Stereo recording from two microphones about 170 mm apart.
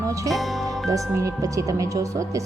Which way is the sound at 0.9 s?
20° right (ahead or behind).